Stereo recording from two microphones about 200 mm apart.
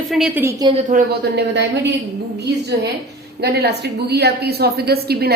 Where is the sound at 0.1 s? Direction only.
Centre (ahead or behind).